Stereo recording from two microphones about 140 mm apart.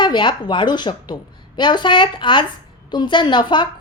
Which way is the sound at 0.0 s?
35° left (ahead or behind).